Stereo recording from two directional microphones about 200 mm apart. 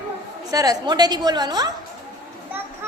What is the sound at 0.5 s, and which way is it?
A woman's voice, 20° right (ahead or behind).